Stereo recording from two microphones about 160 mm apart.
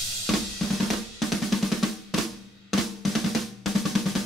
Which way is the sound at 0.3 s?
Centre (ahead or behind).